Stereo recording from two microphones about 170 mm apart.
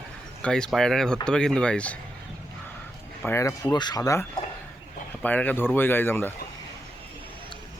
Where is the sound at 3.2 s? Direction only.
15° left (ahead or behind).